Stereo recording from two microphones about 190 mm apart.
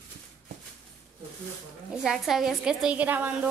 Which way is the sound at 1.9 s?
Centre (ahead or behind).